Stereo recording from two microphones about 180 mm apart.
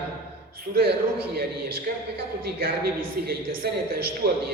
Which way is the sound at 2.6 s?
60° right (ahead or behind).